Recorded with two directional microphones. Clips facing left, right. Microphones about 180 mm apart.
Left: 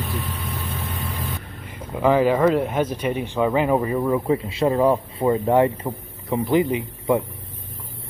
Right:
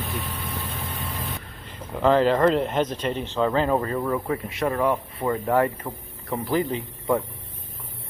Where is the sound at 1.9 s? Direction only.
10° left (ahead or behind).